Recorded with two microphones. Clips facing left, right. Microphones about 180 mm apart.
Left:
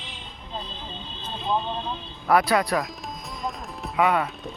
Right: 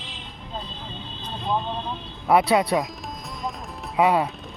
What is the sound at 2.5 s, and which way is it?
Speech, 25° right (ahead or behind).